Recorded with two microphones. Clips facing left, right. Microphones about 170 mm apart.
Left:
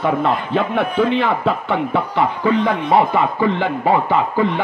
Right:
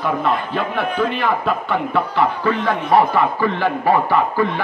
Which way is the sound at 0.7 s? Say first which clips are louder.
Left 4 dB; 20° left (ahead or behind).